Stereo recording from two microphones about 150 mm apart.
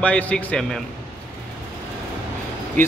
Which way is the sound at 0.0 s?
10° left (ahead or behind).